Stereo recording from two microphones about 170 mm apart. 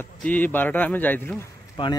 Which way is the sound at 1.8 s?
30° left (ahead or behind).